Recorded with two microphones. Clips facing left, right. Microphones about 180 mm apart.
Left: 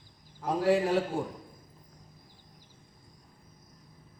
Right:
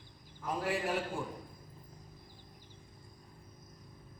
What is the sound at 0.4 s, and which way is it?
Speech, 80° left.